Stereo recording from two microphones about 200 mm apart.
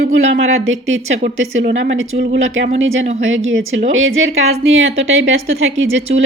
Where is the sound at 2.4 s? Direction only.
75° right (ahead or behind).